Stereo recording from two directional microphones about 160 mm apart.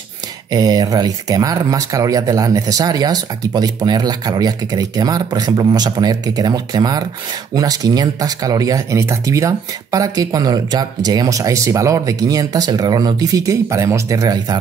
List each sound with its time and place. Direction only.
0.5 s speech: 25° right (ahead or behind)